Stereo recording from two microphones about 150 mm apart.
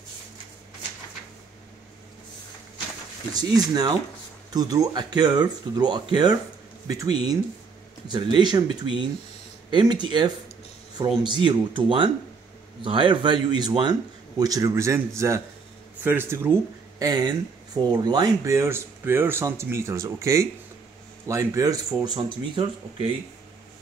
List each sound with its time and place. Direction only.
3.3 s speech: 25° right (ahead or behind)
8.4 s speech: 30° right (ahead or behind)
17.0 s speech: 30° right (ahead or behind)